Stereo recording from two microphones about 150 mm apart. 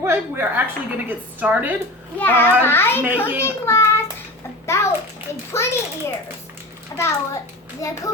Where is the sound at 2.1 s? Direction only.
15° left (ahead or behind).